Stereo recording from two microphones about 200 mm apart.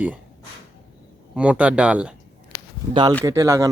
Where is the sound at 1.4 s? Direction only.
5° right (ahead or behind).